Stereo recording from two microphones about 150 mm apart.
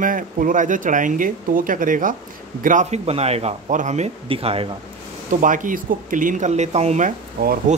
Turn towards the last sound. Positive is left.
turn(degrees=-90)